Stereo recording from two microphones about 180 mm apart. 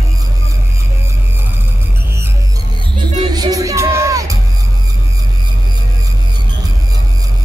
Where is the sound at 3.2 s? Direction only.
20° right (ahead or behind).